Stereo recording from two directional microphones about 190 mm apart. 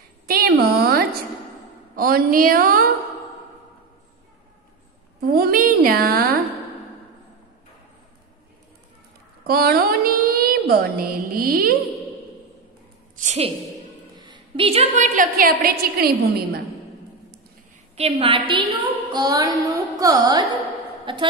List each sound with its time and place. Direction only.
0.3 s a sound: 55° right (ahead or behind)
2.0 s a woman's voice: 50° right (ahead or behind)
5.2 s a woman's voice: 50° right (ahead or behind)
9.5 s mantra: 50° right (ahead or behind)
13.2 s a woman's voice: 35° right (ahead or behind)
14.1 s a woman's voice: 25° right (ahead or behind); by 16.2 s 55° right (ahead or behind)
17.9 s a woman's voice: 30° right (ahead or behind)
18.5 s carnatic music: 25° right (ahead or behind)
21.0 s a woman's voice: 25° right (ahead or behind)